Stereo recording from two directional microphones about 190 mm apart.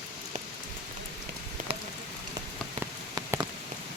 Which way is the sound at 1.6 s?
45° right (ahead or behind).